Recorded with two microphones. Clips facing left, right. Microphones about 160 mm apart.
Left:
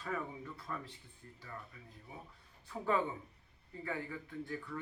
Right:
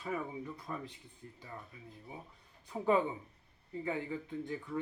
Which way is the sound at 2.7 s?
15° right (ahead or behind).